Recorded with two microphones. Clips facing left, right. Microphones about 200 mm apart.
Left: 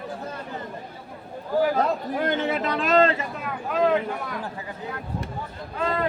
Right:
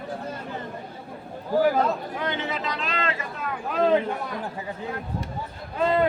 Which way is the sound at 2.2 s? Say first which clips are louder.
Left 5 dB; 50° left (ahead or behind).